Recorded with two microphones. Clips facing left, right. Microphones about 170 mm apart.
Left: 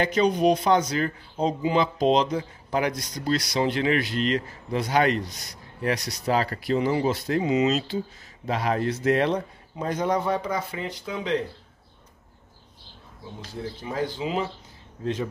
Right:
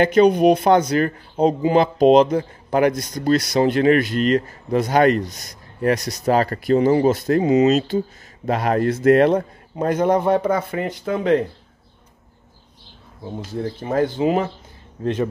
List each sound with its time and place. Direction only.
0.0 s speech: 60° right (ahead or behind)
13.2 s speech: 50° right (ahead or behind)